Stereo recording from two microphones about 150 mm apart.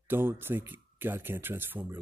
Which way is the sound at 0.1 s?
15° right (ahead or behind).